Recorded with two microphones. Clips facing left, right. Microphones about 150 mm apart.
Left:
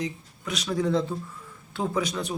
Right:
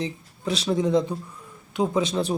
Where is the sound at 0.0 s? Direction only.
30° right (ahead or behind).